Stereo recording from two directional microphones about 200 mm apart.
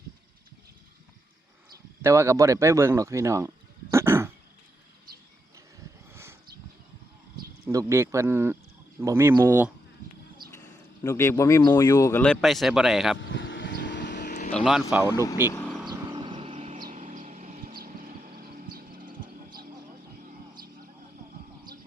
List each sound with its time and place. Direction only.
2.0 s speech: 15° right (ahead or behind)
3.9 s throat clearing: 15° right (ahead or behind)
7.6 s speech: 15° right (ahead or behind)
10.5 s speech: 10° left (ahead or behind)
12.2 s speech: 5° left (ahead or behind)
13.1 s vehicle: 65° left (ahead or behind)
14.3 s vehicle: 40° left (ahead or behind)
14.6 s speech: centre (ahead or behind)
15.1 s speech: 15° left (ahead or behind)
15.9 s vehicle: 20° right (ahead or behind)
16.8 s a sound: 40° right (ahead or behind)
19.0 s music: 20° right (ahead or behind)